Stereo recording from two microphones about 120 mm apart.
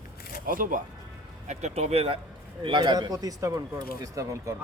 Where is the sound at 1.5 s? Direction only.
65° right (ahead or behind).